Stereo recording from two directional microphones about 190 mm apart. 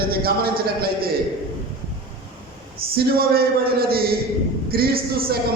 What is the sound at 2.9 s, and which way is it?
A man's voice, 55° right (ahead or behind).